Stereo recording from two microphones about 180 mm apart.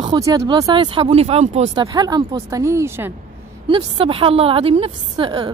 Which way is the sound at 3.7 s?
30° right (ahead or behind).